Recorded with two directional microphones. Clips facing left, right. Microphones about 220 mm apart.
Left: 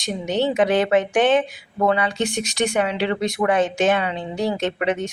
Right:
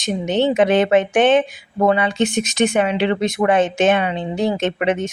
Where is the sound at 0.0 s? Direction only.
20° right (ahead or behind).